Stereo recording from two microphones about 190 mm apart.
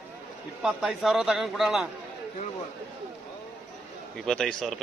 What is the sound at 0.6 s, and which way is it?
A man's voice, centre (ahead or behind).